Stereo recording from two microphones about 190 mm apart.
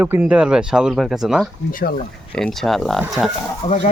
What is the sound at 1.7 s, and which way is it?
Speech, 45° left (ahead or behind).